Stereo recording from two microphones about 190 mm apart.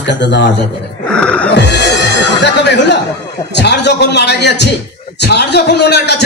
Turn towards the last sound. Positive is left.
turn(degrees=60)  # may be behind; listen again after turning